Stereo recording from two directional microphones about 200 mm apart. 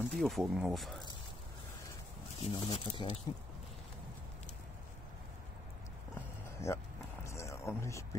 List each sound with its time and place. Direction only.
0.1 s speech: centre (ahead or behind)
2.5 s speech: 25° left (ahead or behind)
6.7 s speech: 15° left (ahead or behind)
7.2 s a sound: 15° left (ahead or behind)